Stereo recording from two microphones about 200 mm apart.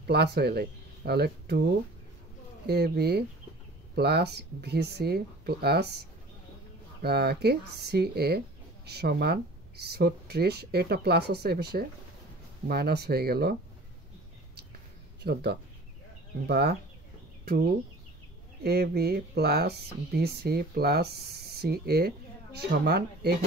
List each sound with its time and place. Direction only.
0.0 s speech: 55° right (ahead or behind)
7.0 s speech: 55° right (ahead or behind)
15.2 s speech: 55° right (ahead or behind)
18.6 s speech: 50° right (ahead or behind)